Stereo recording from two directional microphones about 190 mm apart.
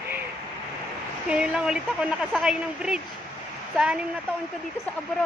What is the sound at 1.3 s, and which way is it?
Speech, 5° right (ahead or behind).